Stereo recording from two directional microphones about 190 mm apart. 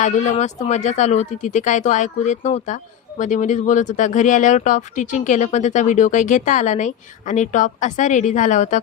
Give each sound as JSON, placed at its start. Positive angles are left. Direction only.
{"t": 0.0, "sound": "speech", "side_deg": 40}